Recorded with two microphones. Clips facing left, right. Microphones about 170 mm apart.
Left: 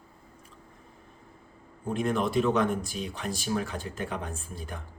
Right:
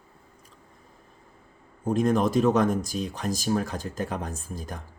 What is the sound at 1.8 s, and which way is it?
Speech, 40° right (ahead or behind).